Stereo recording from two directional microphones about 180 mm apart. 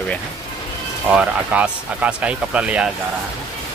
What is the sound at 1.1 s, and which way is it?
Speech, 5° right (ahead or behind).